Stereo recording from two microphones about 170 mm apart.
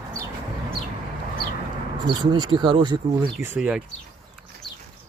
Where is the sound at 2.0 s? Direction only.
25° right (ahead or behind).